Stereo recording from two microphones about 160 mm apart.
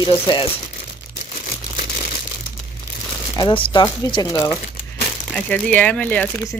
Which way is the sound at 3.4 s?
35° left (ahead or behind).